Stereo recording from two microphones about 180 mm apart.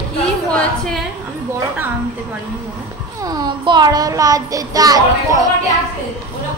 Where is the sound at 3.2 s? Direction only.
20° right (ahead or behind).